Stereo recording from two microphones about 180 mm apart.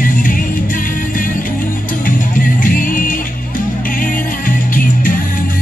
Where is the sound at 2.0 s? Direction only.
50° left (ahead or behind).